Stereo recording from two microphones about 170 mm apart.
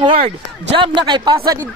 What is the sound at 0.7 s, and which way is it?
Speech, 30° right (ahead or behind).